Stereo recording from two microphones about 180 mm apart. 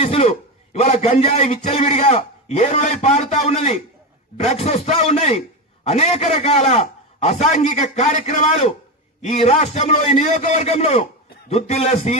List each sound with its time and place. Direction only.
0.0 s a man's voice: 35° left (ahead or behind)